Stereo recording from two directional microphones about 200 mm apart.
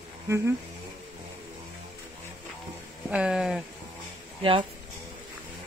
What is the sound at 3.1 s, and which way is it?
Speech, 5° right (ahead or behind).